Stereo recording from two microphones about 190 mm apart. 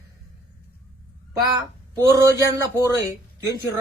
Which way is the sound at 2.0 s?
15° right (ahead or behind).